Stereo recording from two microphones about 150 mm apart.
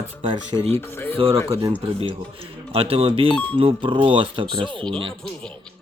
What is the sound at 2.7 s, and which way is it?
Speech, 40° right (ahead or behind).